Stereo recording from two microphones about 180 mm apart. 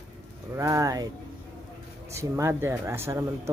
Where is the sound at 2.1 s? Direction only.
15° right (ahead or behind).